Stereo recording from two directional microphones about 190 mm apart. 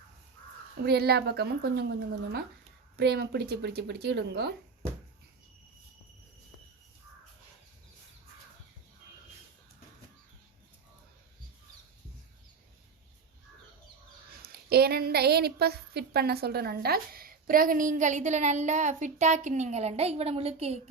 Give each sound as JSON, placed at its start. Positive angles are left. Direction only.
{"t": 0.9, "sound": "speech", "side_deg": -55}
{"t": 14.5, "sound": "a woman's voice", "side_deg": -55}